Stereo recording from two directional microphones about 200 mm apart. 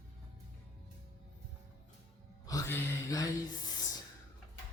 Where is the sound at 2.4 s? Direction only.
15° left (ahead or behind).